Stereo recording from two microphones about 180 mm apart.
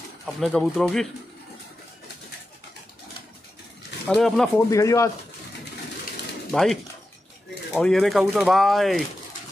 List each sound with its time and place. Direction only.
0.4 s speech: centre (ahead or behind)
4.1 s speech: 5° left (ahead or behind)
4.6 s speech: 20° left (ahead or behind)
6.5 s speech: centre (ahead or behind)